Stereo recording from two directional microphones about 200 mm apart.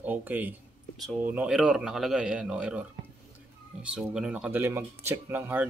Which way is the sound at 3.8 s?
5° right (ahead or behind).